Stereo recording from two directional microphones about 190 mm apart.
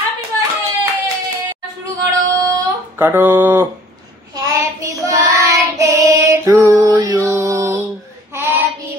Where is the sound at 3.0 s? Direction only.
10° right (ahead or behind).